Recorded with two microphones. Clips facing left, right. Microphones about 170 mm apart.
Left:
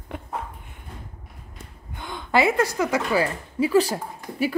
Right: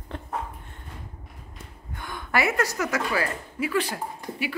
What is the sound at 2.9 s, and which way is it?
Speech, 25° left (ahead or behind).